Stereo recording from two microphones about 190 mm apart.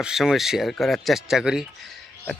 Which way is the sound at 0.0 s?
5° right (ahead or behind).